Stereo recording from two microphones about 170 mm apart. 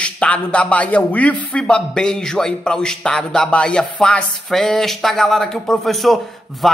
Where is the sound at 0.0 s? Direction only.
5° left (ahead or behind).